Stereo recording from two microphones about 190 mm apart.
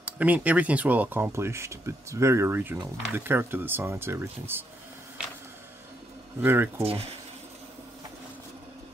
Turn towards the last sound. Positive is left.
turn(degrees=-30)  # may be behind; listen again after turning